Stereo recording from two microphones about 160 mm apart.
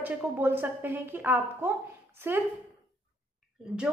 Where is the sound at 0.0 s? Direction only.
10° right (ahead or behind).